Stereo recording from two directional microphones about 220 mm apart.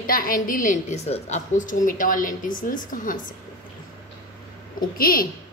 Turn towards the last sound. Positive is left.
turn(degrees=40)  # may be behind; listen again after turning